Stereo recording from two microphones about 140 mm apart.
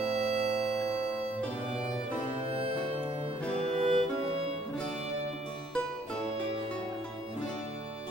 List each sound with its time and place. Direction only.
0.0 s music: 50° right (ahead or behind)
3.5 s music: 40° right (ahead or behind)